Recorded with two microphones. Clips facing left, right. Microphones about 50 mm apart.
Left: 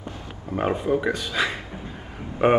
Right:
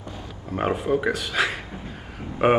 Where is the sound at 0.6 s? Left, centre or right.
Centre.